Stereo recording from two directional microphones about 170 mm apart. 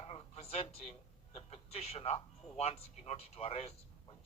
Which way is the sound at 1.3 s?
40° left (ahead or behind).